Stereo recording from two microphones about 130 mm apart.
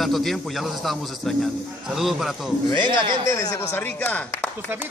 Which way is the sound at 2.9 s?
35° right (ahead or behind).